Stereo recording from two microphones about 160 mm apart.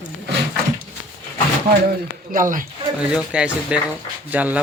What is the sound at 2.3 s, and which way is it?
Speech, 60° right (ahead or behind).